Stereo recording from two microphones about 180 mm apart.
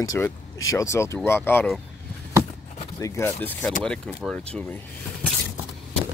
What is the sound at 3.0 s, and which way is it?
Speech, 15° left (ahead or behind).